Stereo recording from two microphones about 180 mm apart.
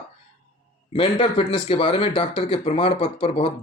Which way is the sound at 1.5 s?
30° left (ahead or behind).